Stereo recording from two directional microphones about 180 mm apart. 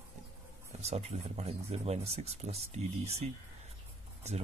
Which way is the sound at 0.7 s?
35° right (ahead or behind).